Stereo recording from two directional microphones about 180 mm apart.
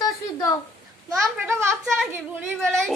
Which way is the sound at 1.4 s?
15° right (ahead or behind).